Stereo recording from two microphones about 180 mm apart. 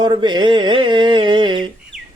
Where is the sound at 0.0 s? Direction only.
25° right (ahead or behind).